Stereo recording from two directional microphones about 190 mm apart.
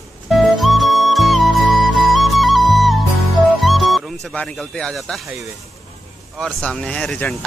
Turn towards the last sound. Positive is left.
turn(degrees=5)  # may be behind; listen again after turning